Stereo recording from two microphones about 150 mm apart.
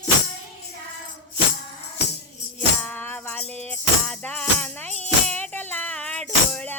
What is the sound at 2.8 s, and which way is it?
Music, 10° left (ahead or behind).